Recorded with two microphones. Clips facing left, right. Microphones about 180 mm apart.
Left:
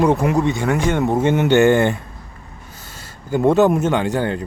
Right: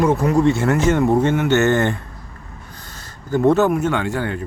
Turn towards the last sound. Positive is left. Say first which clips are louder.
# left 3 dB
turn(degrees=20)  # may be behind; listen again after turning